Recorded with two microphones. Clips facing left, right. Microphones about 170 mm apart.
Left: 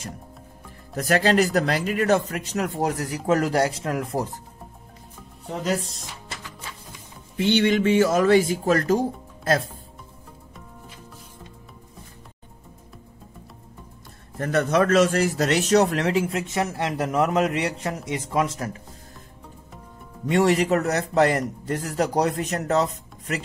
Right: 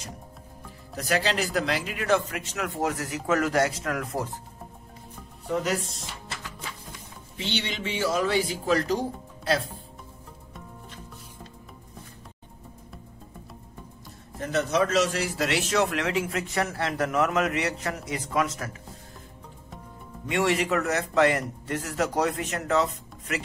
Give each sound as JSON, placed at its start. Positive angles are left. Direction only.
{"t": 0.9, "sound": "a man's voice", "side_deg": 50}
{"t": 5.5, "sound": "a man's voice", "side_deg": 30}
{"t": 7.3, "sound": "speech", "side_deg": 50}
{"t": 14.4, "sound": "a man's voice", "side_deg": 55}
{"t": 20.2, "sound": "a man's voice", "side_deg": 40}